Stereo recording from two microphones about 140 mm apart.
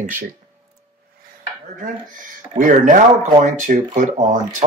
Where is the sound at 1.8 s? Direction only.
70° right (ahead or behind).